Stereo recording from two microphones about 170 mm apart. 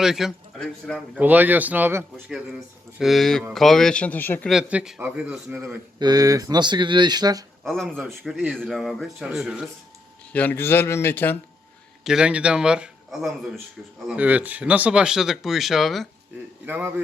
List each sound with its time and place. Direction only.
0.0 s speech: centre (ahead or behind)
1.2 s speech: 10° right (ahead or behind); by 4.4 s 10° left (ahead or behind)
4.4 s speech: 5° right (ahead or behind)
6.0 s speech: 20° right (ahead or behind)
7.6 s speech: centre (ahead or behind)
10.3 s a man's voice: 10° left (ahead or behind)
12.0 s speech: 5° right (ahead or behind)
16.6 s speech: 10° right (ahead or behind)